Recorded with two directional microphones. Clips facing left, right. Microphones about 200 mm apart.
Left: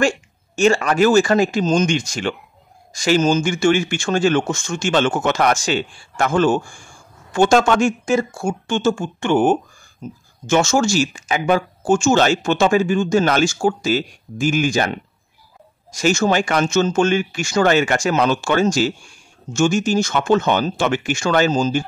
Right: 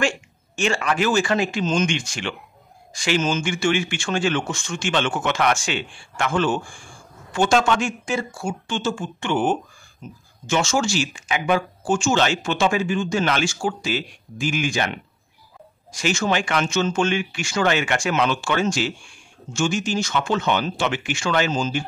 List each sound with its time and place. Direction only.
0.6 s speech: 40° left (ahead or behind)